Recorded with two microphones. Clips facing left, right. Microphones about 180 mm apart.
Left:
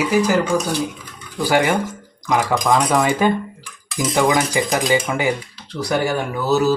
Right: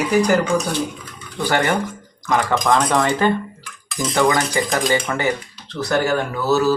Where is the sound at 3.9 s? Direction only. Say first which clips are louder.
Left 2 dB; 5° left (ahead or behind).